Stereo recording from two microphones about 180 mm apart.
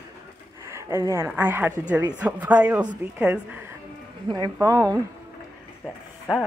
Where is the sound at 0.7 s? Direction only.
15° right (ahead or behind).